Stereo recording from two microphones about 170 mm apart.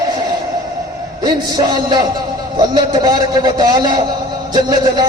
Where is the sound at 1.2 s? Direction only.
25° right (ahead or behind).